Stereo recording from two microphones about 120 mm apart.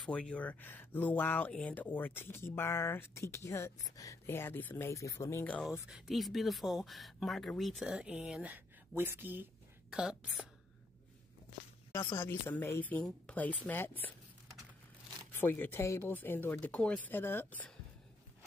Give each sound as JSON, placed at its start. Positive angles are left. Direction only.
{"t": 0.0, "sound": "speech", "side_deg": 10}
{"t": 5.4, "sound": "speech", "side_deg": 10}
{"t": 5.7, "sound": "speech", "side_deg": -5}
{"t": 12.1, "sound": "speech", "side_deg": 20}
{"t": 15.4, "sound": "speech", "side_deg": 15}